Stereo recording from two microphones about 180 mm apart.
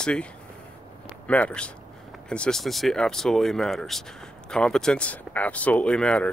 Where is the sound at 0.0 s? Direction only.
5° left (ahead or behind).